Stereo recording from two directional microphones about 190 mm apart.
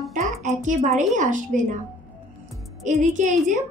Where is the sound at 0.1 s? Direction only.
40° right (ahead or behind).